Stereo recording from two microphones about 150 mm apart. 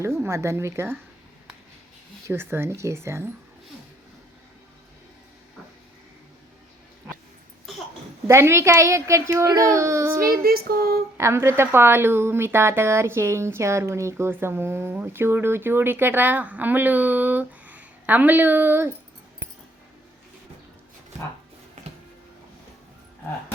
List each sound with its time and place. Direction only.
0.0 s speech: 15° right (ahead or behind)
2.2 s speech: 15° right (ahead or behind)
8.3 s a child's voice: 15° right (ahead or behind)
10.4 s female singing: 90° right
11.2 s speech: 20° right (ahead or behind)